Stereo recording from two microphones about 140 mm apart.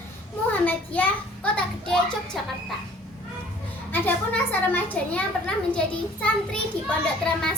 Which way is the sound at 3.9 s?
15° left (ahead or behind).